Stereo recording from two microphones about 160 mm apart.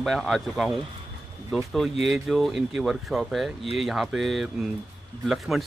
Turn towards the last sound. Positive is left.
turn(degrees=0)  # may be behind; listen again after turning